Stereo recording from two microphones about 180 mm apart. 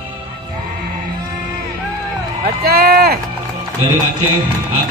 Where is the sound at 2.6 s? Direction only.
60° right (ahead or behind).